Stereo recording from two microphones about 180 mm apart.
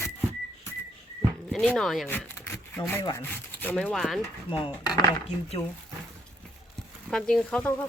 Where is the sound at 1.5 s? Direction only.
5° left (ahead or behind).